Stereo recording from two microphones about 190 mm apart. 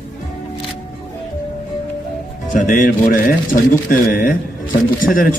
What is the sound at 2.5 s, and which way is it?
Speech, 45° left (ahead or behind).